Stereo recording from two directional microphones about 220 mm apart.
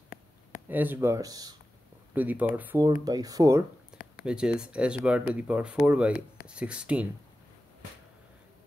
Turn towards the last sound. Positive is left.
turn(degrees=-5)  # may be behind; listen again after turning